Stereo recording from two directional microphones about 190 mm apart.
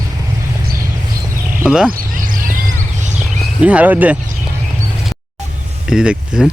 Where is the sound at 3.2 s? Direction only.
5° right (ahead or behind).